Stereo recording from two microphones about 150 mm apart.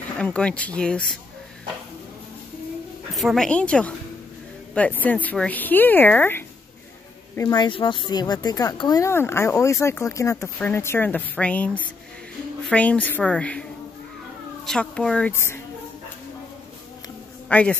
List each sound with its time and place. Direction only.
0.2 s speech: 10° left (ahead or behind)
3.2 s speech: centre (ahead or behind); by 7.6 s 20° left (ahead or behind)
7.6 s speech: 30° left (ahead or behind); by 13.7 s 5° left (ahead or behind)
14.7 s speech: 5° left (ahead or behind)
17.5 s a man's voice: 10° left (ahead or behind)